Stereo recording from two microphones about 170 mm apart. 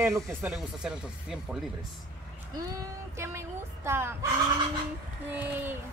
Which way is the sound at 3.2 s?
15° right (ahead or behind).